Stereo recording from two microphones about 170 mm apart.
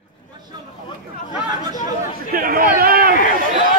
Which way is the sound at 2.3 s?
60° right (ahead or behind).